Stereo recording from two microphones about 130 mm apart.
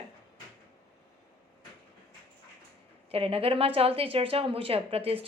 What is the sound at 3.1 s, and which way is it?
A woman's voice, 45° right (ahead or behind).